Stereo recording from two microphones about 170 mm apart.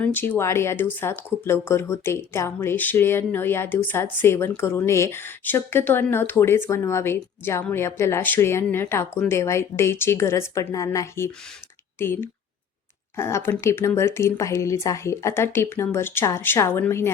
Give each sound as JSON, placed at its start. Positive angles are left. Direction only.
{"t": 0.0, "sound": "speech", "side_deg": 10}